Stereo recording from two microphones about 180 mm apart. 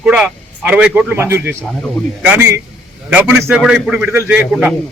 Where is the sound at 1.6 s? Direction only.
5° left (ahead or behind).